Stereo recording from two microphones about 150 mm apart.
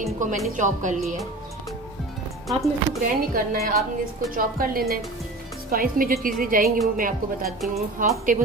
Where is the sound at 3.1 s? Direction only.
75° right (ahead or behind).